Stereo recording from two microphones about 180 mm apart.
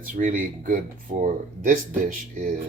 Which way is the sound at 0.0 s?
45° right (ahead or behind).